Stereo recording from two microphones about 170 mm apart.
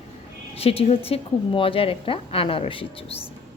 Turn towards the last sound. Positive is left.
turn(degrees=30)  # may be behind; listen again after turning